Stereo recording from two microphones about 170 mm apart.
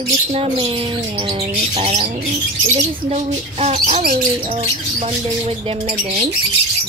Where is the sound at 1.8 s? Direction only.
40° right (ahead or behind).